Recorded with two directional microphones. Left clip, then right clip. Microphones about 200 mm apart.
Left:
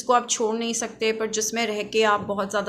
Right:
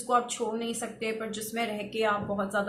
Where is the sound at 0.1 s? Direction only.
50° left (ahead or behind).